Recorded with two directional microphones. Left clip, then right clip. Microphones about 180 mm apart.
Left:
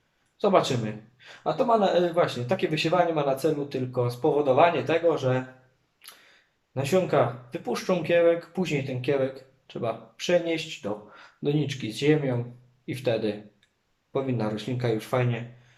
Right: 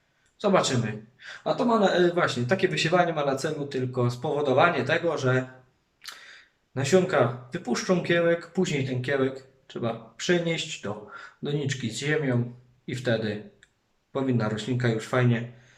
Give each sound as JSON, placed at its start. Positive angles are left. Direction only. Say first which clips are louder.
{"t": 0.3, "sound": "speech", "louder": "left 1 dB", "side_deg": 15}
{"t": 6.7, "sound": "speech", "louder": "right 1 dB", "side_deg": 15}